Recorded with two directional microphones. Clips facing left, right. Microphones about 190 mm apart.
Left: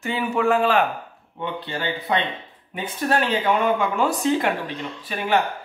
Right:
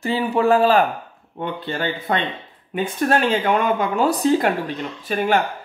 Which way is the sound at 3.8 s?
35° right (ahead or behind).